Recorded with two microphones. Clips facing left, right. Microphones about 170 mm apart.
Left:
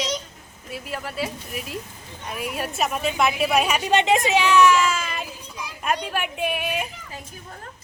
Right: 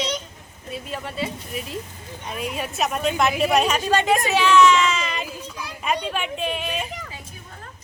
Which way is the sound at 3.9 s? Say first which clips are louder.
Left 2 dB; 20° left (ahead or behind).